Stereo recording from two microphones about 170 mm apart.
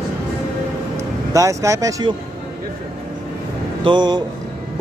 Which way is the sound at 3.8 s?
25° right (ahead or behind).